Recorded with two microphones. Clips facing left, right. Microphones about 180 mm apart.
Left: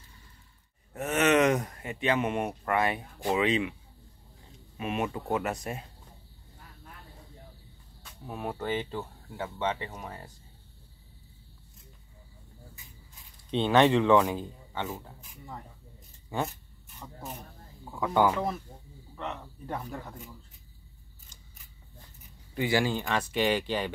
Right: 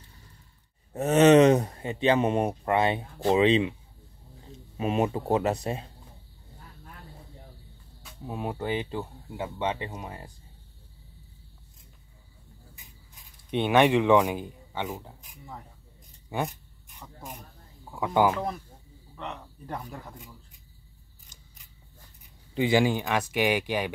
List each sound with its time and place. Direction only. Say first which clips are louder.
0.9 s speech: right 7 dB; 30° right (ahead or behind)
4.7 s speech: right 5 dB; 30° right (ahead or behind)
8.3 s speech: right 2 dB; 20° right (ahead or behind)
13.5 s speech: right 1 dB; 15° right (ahead or behind)
16.3 s speech: right 1 dB; 15° right (ahead or behind)
18.0 s speech: right 1 dB; 15° right (ahead or behind)
19.1 s a man's voice: left 1 dB; centre (ahead or behind)
22.5 s speech: right 4 dB; 20° right (ahead or behind)